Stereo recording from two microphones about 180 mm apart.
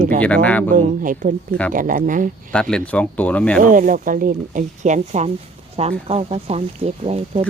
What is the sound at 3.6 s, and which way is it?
Speech, 45° right (ahead or behind).